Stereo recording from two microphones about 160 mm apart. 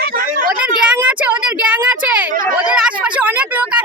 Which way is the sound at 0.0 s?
65° right (ahead or behind).